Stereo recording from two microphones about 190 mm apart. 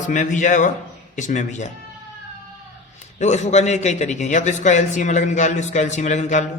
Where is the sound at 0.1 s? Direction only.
40° left (ahead or behind).